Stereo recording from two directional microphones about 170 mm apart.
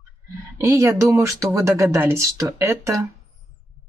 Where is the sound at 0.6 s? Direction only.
15° right (ahead or behind).